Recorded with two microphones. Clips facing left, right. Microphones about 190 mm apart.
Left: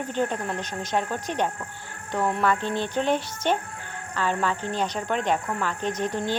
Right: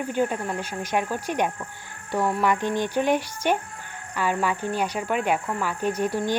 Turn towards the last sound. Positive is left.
turn(degrees=-10)  # may be behind; listen again after turning